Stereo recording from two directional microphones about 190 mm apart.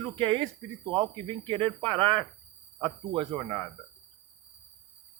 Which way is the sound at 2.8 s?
25° right (ahead or behind).